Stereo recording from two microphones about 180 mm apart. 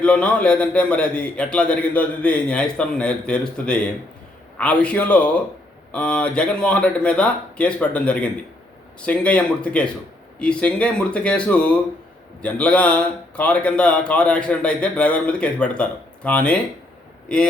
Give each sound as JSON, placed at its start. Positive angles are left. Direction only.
{"t": 0.0, "sound": "a man's voice", "side_deg": 5}